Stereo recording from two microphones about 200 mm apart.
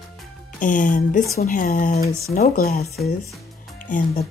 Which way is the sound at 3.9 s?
40° left (ahead or behind).